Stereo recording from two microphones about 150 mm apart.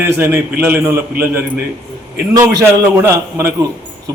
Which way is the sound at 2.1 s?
20° right (ahead or behind).